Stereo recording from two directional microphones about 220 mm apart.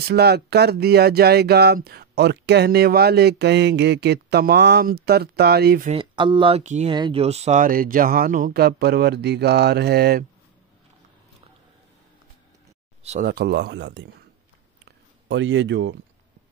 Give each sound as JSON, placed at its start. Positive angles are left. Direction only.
{"t": 0.1, "sound": "speech", "side_deg": -45}
{"t": 5.9, "sound": "speech", "side_deg": -20}
{"t": 6.9, "sound": "speech", "side_deg": -20}
{"t": 13.0, "sound": "speech", "side_deg": -30}
{"t": 13.3, "sound": "speech", "side_deg": -50}
{"t": 15.2, "sound": "speech", "side_deg": -55}